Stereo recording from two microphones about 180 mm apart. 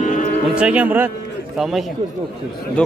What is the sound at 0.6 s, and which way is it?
Speech, 5° right (ahead or behind).